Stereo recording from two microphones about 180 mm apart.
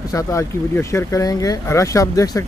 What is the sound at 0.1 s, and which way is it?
Speech, 15° left (ahead or behind).